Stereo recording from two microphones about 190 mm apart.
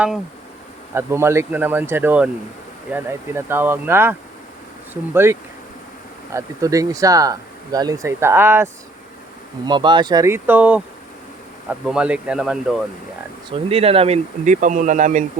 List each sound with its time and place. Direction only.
0.9 s speech: 15° right (ahead or behind)
5.1 s speech: 15° right (ahead or behind)
9.6 s speech: 25° right (ahead or behind); by 12.7 s 5° right (ahead or behind)
13.5 s speech: 30° right (ahead or behind)